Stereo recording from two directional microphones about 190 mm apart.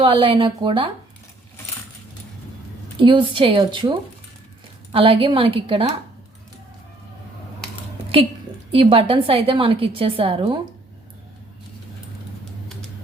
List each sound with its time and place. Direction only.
0.0 s a woman's voice: 25° right (ahead or behind)
3.0 s a woman's voice: 25° right (ahead or behind)
8.7 s a woman's voice: 30° right (ahead or behind)